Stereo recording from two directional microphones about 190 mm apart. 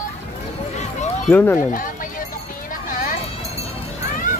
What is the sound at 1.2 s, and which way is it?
Speech, 10° left (ahead or behind).